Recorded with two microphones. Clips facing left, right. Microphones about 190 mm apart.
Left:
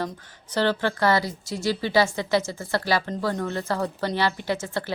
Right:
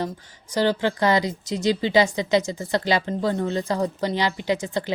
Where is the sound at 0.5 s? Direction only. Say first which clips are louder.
Right 2 dB; 15° right (ahead or behind).